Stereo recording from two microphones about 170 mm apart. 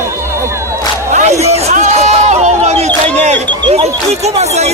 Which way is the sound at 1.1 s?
40° right (ahead or behind).